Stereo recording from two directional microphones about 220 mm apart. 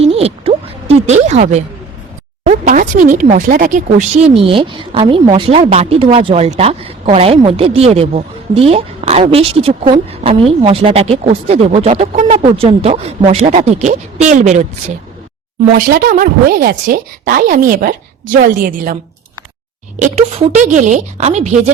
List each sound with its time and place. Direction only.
0.0 s a sound: 25° right (ahead or behind)
2.4 s a woman's voice: 35° right (ahead or behind)
20.0 s a woman's voice: 30° right (ahead or behind)